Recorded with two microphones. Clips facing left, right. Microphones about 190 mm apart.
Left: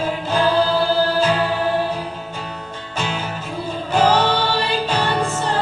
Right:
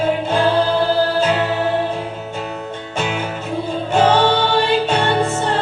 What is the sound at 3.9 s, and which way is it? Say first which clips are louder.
Music: right 2 dB; 25° right (ahead or behind).